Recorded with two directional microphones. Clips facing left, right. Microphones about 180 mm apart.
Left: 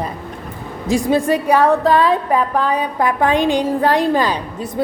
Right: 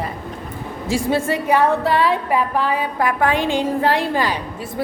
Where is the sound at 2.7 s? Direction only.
20° left (ahead or behind).